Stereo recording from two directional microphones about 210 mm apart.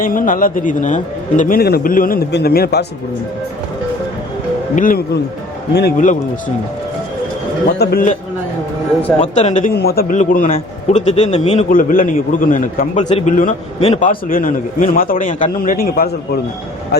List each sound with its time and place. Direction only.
0.0 s a man's voice: 40° left (ahead or behind)
4.7 s a man's voice: 40° left (ahead or behind)
7.8 s a man's voice: 45° left (ahead or behind)
9.2 s a man's voice: 35° left (ahead or behind)
9.7 s a man's voice: 45° left (ahead or behind); by 14.1 s 30° left (ahead or behind)
14.1 s a man's voice: 40° left (ahead or behind)